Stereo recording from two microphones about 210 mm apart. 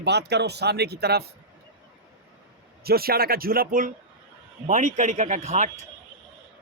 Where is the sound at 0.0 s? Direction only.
55° right (ahead or behind).